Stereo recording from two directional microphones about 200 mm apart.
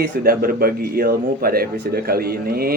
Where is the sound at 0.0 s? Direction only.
50° right (ahead or behind).